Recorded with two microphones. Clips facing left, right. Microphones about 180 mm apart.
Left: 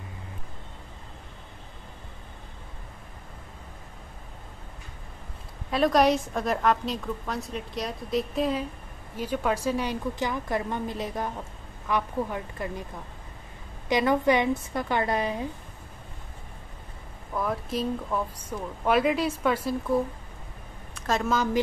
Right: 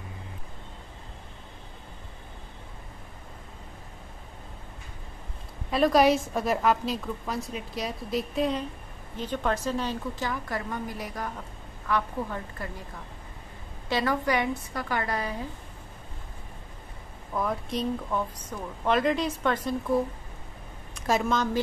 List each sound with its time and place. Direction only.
5.7 s a woman's voice: centre (ahead or behind); by 12.8 s 20° left (ahead or behind)
13.8 s a woman's voice: 20° left (ahead or behind)
17.4 s a woman's voice: centre (ahead or behind)
21.2 s a woman's voice: 5° left (ahead or behind)